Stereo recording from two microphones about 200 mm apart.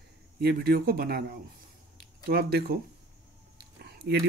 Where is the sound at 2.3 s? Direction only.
50° right (ahead or behind).